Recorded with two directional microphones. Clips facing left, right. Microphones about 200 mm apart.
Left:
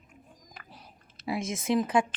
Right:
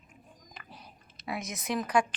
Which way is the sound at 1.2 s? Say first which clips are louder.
Left 5 dB; 25° left (ahead or behind).